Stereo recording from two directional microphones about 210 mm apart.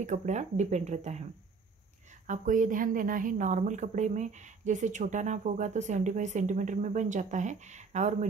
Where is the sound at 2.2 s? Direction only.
35° right (ahead or behind).